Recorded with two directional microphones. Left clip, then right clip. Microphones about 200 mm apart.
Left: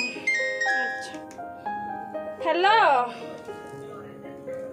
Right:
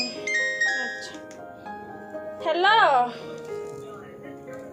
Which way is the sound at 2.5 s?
20° left (ahead or behind).